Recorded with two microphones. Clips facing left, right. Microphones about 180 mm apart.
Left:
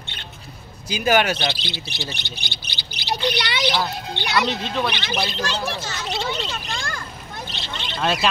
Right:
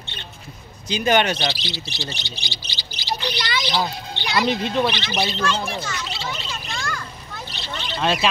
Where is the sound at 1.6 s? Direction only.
55° left (ahead or behind).